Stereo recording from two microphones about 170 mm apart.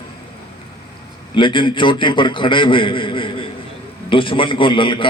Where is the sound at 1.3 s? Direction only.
30° left (ahead or behind).